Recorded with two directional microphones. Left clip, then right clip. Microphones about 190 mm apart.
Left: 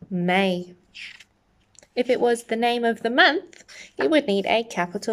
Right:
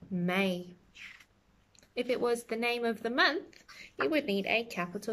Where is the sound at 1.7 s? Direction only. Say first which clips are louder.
Left 10 dB; 15° right (ahead or behind).